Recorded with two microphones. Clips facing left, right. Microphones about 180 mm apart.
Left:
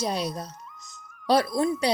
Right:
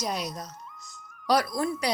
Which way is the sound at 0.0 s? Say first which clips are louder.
Left 4 dB; 30° left (ahead or behind).